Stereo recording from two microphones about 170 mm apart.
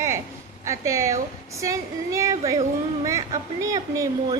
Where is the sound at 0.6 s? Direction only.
15° right (ahead or behind).